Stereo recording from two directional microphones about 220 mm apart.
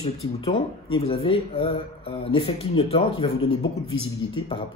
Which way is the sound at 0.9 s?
25° left (ahead or behind).